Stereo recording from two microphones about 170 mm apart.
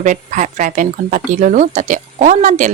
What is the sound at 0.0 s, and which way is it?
Speech, 45° right (ahead or behind).